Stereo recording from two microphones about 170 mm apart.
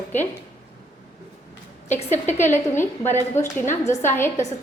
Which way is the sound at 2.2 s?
15° left (ahead or behind).